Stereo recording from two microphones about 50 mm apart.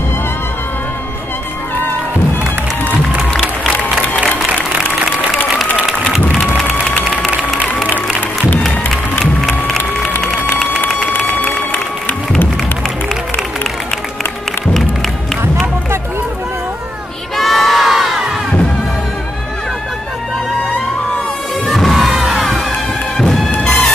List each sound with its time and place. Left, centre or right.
17.4 s crowd: centre
21.6 s music: centre
23.1 s music: centre
23.6 s music: left